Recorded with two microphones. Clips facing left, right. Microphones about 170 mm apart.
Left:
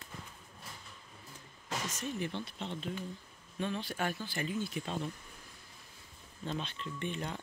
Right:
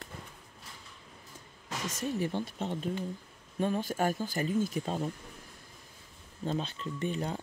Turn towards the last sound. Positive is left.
turn(degrees=-35)  # may be behind; listen again after turning